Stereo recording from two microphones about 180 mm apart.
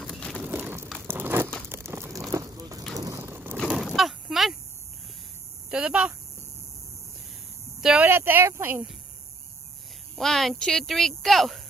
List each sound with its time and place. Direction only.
0.0 s a sound: centre (ahead or behind)
0.4 s a sound: 10° right (ahead or behind)
0.9 s crushing: 10° right (ahead or behind)
1.7 s crumpling: 15° right (ahead or behind)
2.3 s vehicle: 20° right (ahead or behind)
3.5 s a sound: centre (ahead or behind)
5.7 s speech: 5° right (ahead or behind)
7.8 s speech: 5° right (ahead or behind)
10.1 s speech: centre (ahead or behind)